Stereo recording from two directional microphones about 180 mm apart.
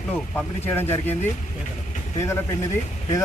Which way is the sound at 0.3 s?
10° left (ahead or behind).